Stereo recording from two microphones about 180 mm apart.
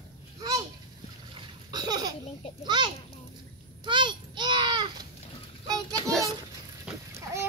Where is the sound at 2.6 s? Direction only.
25° right (ahead or behind).